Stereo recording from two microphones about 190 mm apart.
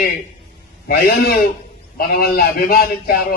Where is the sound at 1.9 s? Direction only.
50° left (ahead or behind).